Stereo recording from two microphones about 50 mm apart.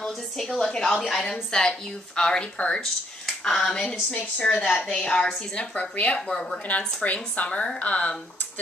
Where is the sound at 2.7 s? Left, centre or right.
Centre.